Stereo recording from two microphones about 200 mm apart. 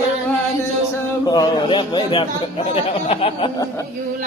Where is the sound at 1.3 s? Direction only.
20° left (ahead or behind).